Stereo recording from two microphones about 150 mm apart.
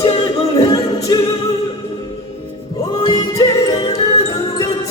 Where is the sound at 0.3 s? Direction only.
25° left (ahead or behind).